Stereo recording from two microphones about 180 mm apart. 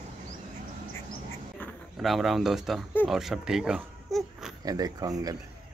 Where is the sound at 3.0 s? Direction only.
Centre (ahead or behind).